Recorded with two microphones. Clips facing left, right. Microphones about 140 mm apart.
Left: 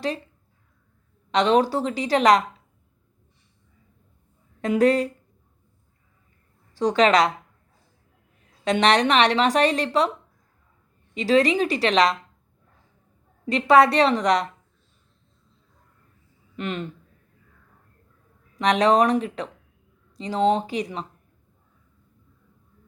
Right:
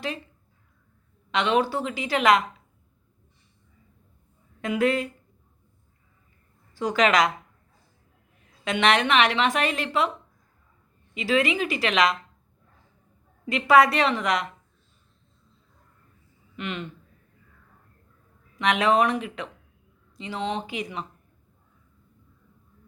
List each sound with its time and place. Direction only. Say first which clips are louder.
1.3 s a woman's voice: left 4 dB; 40° left (ahead or behind)
4.6 s a woman's voice: left 5 dB; 35° left (ahead or behind)
6.7 s a woman's voice: left 3 dB; 35° left (ahead or behind)
8.6 s a woman's voice: left 3 dB; 35° left (ahead or behind)
11.1 s a woman's voice: left 4 dB; 35° left (ahead or behind)
13.4 s a woman's voice: left 2 dB; 35° left (ahead or behind)
16.6 s a woman's voice: left 3 dB; 40° left (ahead or behind)
18.5 s a woman's voice: left 3 dB; 35° left (ahead or behind)